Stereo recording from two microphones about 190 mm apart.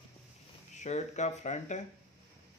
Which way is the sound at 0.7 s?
40° left (ahead or behind).